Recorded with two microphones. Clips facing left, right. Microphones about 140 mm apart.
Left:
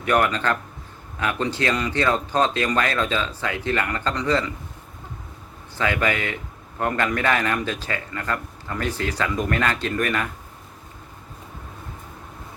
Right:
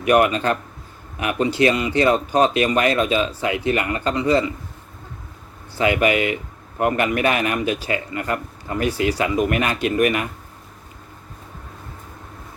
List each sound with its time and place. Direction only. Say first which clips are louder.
0.0 s a man's voice: right 4 dB; 15° right (ahead or behind)
5.7 s a man's voice: right 5 dB; 15° right (ahead or behind)